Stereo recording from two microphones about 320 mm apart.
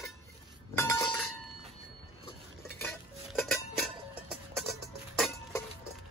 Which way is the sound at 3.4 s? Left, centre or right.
Centre.